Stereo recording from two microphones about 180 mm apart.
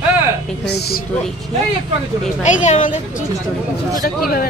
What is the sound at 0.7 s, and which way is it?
Speech, 60° left (ahead or behind).